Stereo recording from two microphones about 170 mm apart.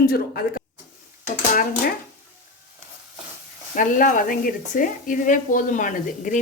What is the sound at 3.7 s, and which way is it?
A woman's voice, 50° left (ahead or behind).